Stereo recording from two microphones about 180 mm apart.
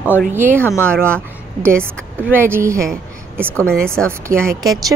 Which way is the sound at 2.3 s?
10° right (ahead or behind).